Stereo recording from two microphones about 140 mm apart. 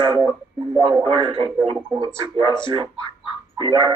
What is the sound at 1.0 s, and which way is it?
Speech, 40° right (ahead or behind).